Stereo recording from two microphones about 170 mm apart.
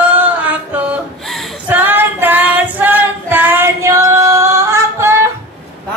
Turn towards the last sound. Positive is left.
turn(degrees=-15)  # may be behind; listen again after turning